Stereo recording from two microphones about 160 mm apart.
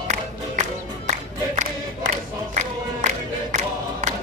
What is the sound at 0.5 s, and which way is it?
Music, 45° right (ahead or behind).